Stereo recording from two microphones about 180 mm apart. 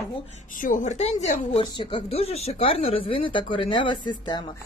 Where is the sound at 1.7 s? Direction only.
25° left (ahead or behind).